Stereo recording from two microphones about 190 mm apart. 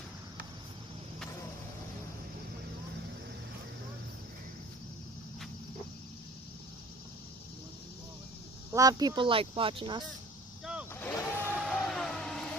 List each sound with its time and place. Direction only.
8.7 s speech: 20° right (ahead or behind)
11.0 s a sound: 10° left (ahead or behind)
11.5 s vehicle: 5° left (ahead or behind)